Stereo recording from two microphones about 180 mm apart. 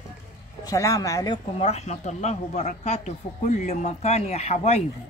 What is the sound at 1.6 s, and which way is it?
Speech, 35° left (ahead or behind).